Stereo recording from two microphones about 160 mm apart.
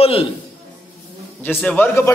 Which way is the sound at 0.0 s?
35° left (ahead or behind).